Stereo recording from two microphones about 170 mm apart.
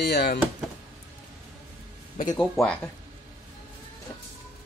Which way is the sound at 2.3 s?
5° left (ahead or behind).